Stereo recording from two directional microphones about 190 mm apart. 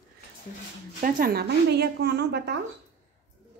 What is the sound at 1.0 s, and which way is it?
Speech, 50° right (ahead or behind).